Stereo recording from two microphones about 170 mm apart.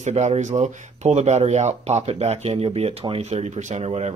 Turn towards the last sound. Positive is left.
turn(degrees=-40)  # may be behind; listen again after turning